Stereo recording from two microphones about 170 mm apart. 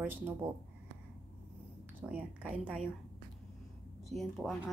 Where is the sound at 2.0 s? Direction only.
5° right (ahead or behind).